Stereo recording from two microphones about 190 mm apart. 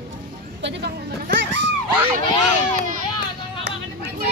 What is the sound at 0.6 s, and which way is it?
Speech, 65° right (ahead or behind).